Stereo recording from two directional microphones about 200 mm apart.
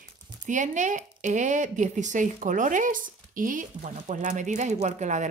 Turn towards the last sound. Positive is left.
turn(degrees=-35)  # may be behind; listen again after turning